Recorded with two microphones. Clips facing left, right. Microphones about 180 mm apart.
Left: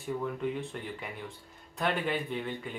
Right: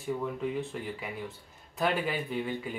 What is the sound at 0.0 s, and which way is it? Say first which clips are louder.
Speech: right 1 dB; centre (ahead or behind).